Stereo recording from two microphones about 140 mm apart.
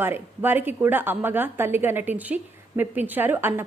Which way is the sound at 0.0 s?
15° right (ahead or behind).